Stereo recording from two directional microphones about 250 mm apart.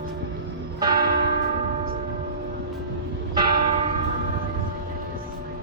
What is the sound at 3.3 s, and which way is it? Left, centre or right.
Church bell, centre.